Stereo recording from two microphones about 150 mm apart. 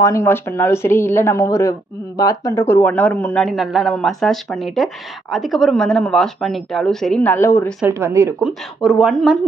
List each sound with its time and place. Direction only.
0.0 s speech: 20° left (ahead or behind)
7.8 s speech: 20° right (ahead or behind)
8.5 s speech: 5° right (ahead or behind)